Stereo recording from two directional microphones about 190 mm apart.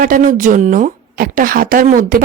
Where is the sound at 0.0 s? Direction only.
45° right (ahead or behind).